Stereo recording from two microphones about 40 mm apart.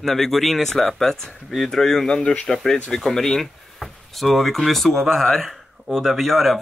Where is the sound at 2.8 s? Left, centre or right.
Centre.